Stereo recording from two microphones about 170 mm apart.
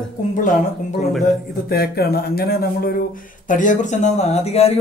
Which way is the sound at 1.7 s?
65° left (ahead or behind).